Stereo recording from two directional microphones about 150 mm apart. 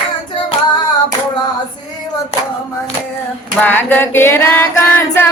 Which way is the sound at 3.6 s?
15° left (ahead or behind).